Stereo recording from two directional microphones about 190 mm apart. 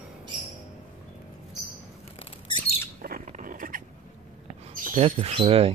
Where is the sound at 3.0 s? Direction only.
45° right (ahead or behind).